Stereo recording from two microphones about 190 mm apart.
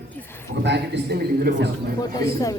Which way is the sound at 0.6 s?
65° right (ahead or behind).